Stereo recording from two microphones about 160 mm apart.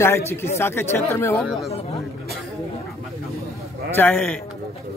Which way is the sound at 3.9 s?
10° left (ahead or behind).